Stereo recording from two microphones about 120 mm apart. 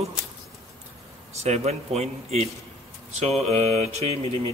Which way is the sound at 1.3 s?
65° right (ahead or behind).